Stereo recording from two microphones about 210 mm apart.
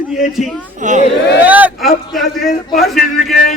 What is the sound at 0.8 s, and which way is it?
Speech, 35° right (ahead or behind).